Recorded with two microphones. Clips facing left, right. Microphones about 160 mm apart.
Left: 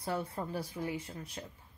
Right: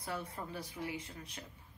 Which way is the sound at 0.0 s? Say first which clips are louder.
Left 6 dB; 30° left (ahead or behind).